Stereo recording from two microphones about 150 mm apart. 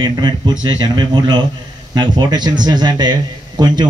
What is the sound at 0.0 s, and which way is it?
Speech, 30° right (ahead or behind).